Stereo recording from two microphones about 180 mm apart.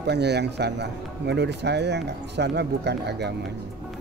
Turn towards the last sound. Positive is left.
turn(degrees=-70)  # may be behind; listen again after turning